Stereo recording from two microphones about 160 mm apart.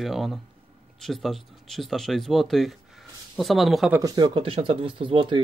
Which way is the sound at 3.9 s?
25° right (ahead or behind).